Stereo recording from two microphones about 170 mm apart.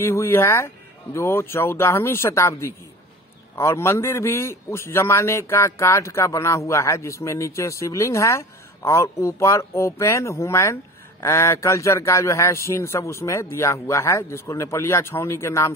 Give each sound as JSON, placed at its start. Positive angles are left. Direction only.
{"t": 0.0, "sound": "a man's voice", "side_deg": 15}